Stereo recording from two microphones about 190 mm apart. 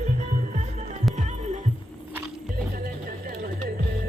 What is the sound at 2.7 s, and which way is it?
Music, 50° right (ahead or behind).